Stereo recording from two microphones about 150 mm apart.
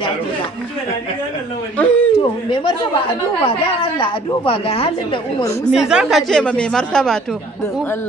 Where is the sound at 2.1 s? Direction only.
35° left (ahead or behind).